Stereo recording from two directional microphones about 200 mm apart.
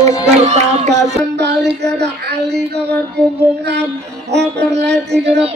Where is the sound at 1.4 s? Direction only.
60° right (ahead or behind).